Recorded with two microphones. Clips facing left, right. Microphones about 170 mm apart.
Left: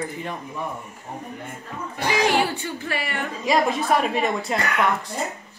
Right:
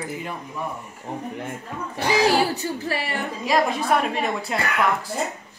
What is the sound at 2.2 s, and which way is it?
Speech, 35° right (ahead or behind).